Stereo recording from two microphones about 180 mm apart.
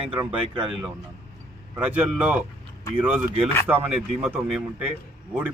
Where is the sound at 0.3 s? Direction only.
30° right (ahead or behind).